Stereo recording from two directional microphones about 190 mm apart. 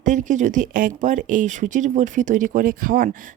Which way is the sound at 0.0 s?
40° right (ahead or behind).